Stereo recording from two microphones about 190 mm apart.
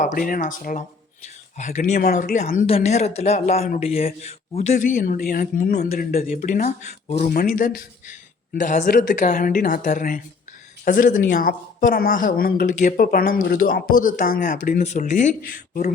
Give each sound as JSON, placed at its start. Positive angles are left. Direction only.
{"t": 0.0, "sound": "speech", "side_deg": 45}